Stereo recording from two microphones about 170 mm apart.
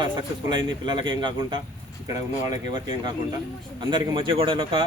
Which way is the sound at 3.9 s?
30° right (ahead or behind).